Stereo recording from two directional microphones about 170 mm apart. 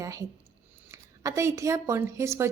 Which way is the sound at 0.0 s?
20° right (ahead or behind).